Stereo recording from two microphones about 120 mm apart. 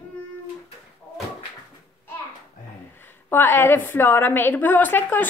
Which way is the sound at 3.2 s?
15° left (ahead or behind).